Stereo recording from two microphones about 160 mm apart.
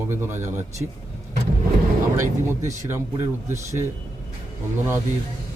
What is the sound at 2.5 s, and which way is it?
Speech, 20° right (ahead or behind).